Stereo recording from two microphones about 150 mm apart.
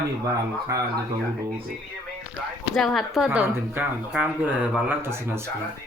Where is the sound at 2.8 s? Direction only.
Centre (ahead or behind); by 5.4 s 15° right (ahead or behind).